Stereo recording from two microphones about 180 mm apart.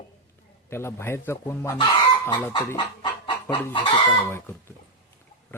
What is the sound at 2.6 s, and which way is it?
Chicken, 25° left (ahead or behind).